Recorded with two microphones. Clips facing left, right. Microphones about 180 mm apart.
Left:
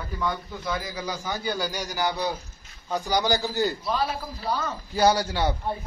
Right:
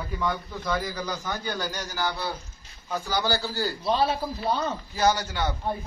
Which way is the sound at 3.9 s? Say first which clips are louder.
Right 3 dB; 25° right (ahead or behind).